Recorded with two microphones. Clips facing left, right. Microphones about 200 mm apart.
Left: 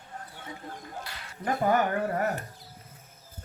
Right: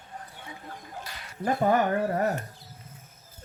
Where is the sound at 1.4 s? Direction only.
30° right (ahead or behind).